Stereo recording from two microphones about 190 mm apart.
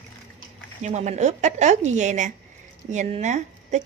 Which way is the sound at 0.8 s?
40° right (ahead or behind).